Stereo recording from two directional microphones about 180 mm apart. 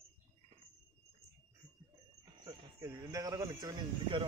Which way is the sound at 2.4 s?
20° right (ahead or behind).